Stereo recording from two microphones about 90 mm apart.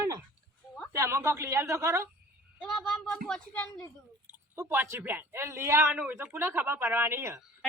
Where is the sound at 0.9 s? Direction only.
30° right (ahead or behind).